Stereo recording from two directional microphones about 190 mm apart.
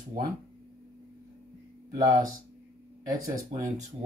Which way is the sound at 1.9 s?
20° right (ahead or behind).